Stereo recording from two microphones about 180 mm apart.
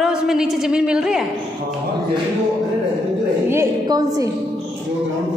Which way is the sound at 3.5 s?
15° right (ahead or behind).